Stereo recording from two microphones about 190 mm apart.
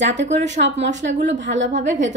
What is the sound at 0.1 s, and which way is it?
Speech, 40° right (ahead or behind).